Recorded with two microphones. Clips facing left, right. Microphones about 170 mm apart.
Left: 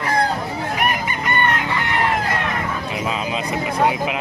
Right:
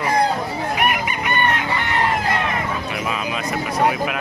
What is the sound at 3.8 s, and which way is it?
Speech, 20° left (ahead or behind).